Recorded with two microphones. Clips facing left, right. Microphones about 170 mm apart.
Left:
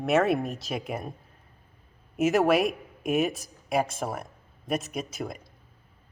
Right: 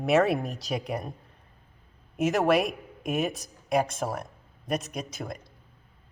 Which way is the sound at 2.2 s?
Centre (ahead or behind).